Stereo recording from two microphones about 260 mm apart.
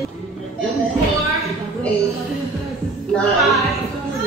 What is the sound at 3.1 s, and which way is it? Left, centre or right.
Speech, centre.